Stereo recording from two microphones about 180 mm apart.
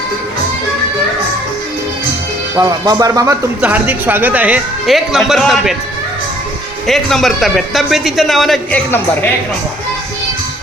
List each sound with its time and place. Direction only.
2.6 s speech: 20° right (ahead or behind)
3.6 s speech: 10° right (ahead or behind)
6.8 s a man's voice: centre (ahead or behind)